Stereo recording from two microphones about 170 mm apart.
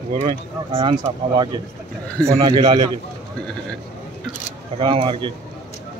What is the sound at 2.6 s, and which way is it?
Speech, 30° right (ahead or behind).